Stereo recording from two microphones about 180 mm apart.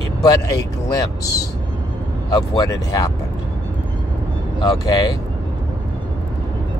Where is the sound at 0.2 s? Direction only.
20° left (ahead or behind).